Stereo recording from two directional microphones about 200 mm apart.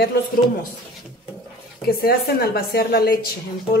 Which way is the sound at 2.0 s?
50° left (ahead or behind).